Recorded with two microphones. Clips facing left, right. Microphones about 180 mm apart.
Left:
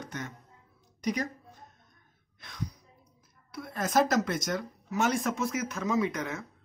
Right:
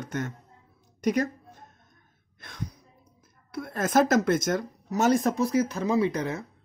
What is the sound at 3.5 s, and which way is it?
Speech, 50° right (ahead or behind).